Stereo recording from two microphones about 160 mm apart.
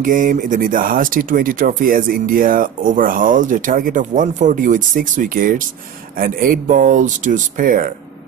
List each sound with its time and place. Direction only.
0.0 s speech: 55° right (ahead or behind)